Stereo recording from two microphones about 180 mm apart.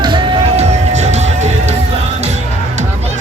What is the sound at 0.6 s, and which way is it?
Music, 35° right (ahead or behind).